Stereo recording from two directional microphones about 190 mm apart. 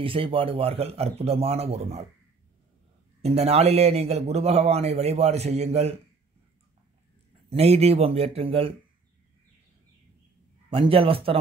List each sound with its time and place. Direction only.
0.0 s a man's voice: 30° right (ahead or behind)
3.2 s a man's voice: 35° right (ahead or behind)
7.4 s a man's voice: 30° right (ahead or behind)
10.7 s speech: 30° right (ahead or behind)